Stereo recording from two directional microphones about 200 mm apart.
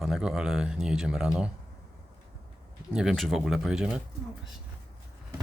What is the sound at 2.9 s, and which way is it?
Speech, centre (ahead or behind).